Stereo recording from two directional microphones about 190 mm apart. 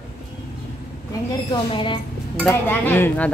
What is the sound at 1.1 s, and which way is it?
Speech, 25° left (ahead or behind).